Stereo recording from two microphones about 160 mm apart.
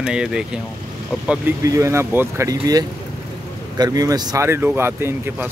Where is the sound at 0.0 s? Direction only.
5° right (ahead or behind).